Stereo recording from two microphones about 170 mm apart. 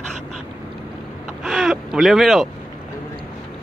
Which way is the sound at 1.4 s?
5° right (ahead or behind).